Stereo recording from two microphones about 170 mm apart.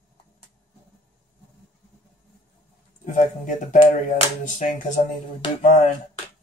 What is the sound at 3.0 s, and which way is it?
Speech, 45° left (ahead or behind).